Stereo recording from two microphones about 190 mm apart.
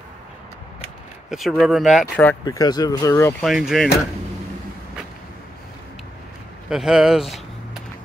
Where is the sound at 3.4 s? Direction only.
Centre (ahead or behind).